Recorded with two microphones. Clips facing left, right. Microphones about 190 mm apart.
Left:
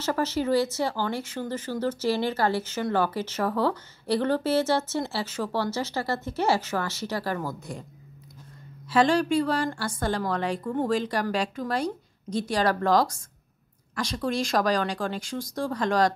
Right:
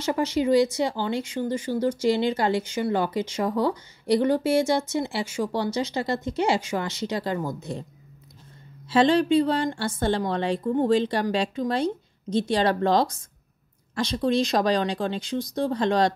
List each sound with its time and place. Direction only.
0.0 s speech: 15° right (ahead or behind)
8.8 s speech: 25° right (ahead or behind)